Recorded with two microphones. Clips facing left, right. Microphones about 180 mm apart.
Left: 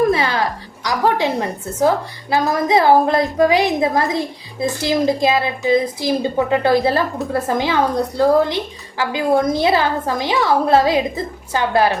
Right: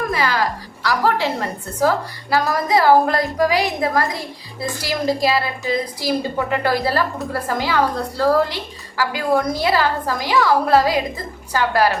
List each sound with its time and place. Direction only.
0.1 s a woman's voice: 25° left (ahead or behind)
2.3 s a woman's voice: 20° left (ahead or behind)